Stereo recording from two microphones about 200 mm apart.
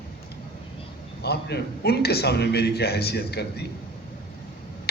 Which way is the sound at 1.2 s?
55° left (ahead or behind).